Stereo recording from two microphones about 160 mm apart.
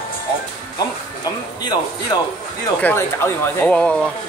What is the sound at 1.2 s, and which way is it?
Speech, 25° left (ahead or behind).